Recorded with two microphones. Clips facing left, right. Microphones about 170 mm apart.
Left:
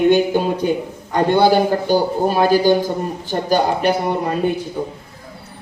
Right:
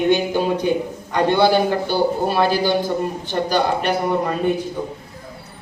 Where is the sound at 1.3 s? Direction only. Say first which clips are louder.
Left 3 dB; 45° left (ahead or behind).